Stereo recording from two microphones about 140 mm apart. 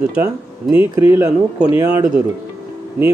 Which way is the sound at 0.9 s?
20° right (ahead or behind).